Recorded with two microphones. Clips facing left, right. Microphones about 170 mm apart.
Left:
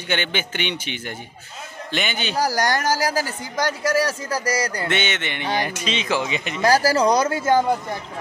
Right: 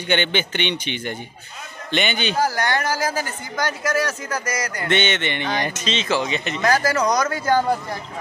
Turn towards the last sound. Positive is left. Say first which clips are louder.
# left 1 dB
turn(degrees=20)  # may be behind; listen again after turning